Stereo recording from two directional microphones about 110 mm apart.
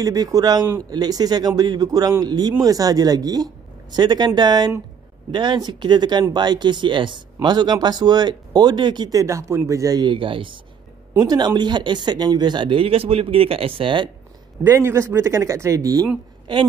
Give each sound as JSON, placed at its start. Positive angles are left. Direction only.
{"t": 0.0, "sound": "speech", "side_deg": -35}
{"t": 10.0, "sound": "speech", "side_deg": -50}
{"t": 11.1, "sound": "speech", "side_deg": -40}
{"t": 14.6, "sound": "speech", "side_deg": -25}